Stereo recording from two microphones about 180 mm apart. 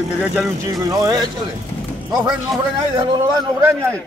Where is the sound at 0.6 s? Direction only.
20° right (ahead or behind).